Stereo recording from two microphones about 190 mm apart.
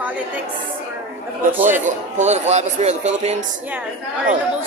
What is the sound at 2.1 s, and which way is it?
A man's voice, 35° right (ahead or behind).